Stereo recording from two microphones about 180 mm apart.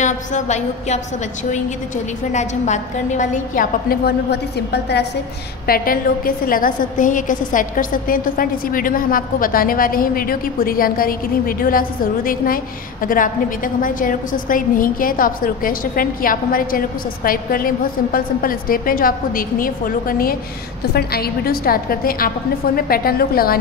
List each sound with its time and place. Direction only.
0.0 s a woman's voice: 40° left (ahead or behind); by 5.0 s 70° left (ahead or behind)
5.7 s a woman's voice: 55° left (ahead or behind)